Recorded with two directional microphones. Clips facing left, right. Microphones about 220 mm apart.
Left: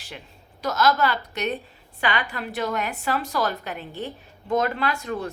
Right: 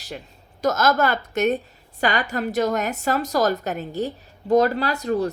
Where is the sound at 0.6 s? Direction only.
45° right (ahead or behind).